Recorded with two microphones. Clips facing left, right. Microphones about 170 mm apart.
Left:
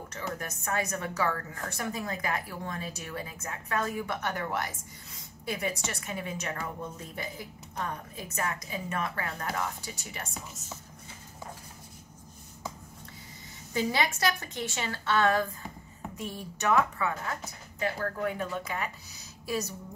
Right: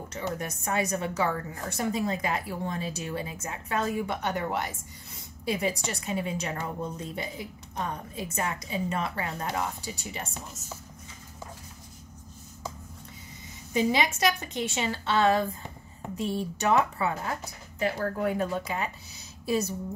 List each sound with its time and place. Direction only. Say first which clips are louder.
0.1 s a woman's voice: right 4 dB; 25° right (ahead or behind)
13.7 s a woman's voice: right 4 dB; 20° right (ahead or behind)